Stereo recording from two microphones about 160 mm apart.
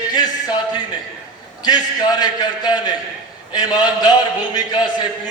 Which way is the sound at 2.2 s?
25° left (ahead or behind).